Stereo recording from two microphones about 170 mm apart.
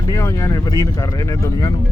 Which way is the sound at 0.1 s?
20° left (ahead or behind).